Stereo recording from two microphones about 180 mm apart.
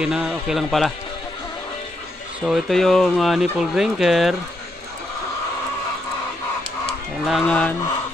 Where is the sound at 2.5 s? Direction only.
Centre (ahead or behind).